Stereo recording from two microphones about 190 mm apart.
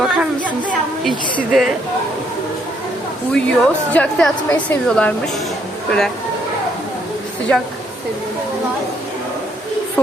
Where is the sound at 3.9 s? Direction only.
5° left (ahead or behind).